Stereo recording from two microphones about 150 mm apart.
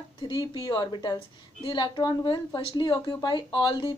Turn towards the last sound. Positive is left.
turn(degrees=30)  # may be behind; listen again after turning